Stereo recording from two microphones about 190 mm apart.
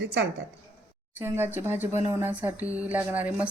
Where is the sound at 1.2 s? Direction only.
10° right (ahead or behind).